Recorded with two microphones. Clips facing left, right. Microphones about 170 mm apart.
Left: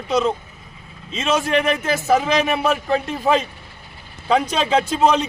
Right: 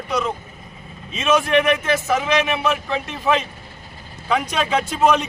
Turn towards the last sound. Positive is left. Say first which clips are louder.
# left 1 dB
turn(degrees=30)  # may be behind; listen again after turning